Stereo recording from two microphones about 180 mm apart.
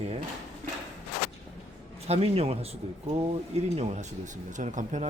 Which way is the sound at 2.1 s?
35° right (ahead or behind).